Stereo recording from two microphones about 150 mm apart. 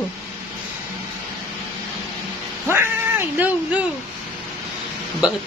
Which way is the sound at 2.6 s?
15° right (ahead or behind).